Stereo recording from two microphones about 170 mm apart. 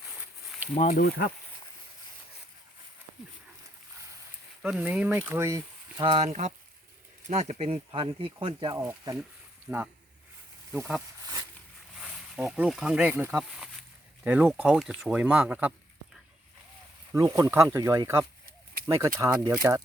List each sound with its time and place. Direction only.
0.2 s a sound: 10° right (ahead or behind)
0.7 s speech: 45° left (ahead or behind)
0.9 s speech: 65° left (ahead or behind)
4.6 s speech: 10° right (ahead or behind)
6.0 s speech: 35° right (ahead or behind)
8.8 s speech: 15° right (ahead or behind)
17.1 s speech: 20° right (ahead or behind)